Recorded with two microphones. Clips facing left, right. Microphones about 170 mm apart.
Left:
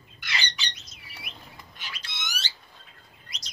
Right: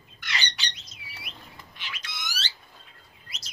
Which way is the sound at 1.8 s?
35° left (ahead or behind).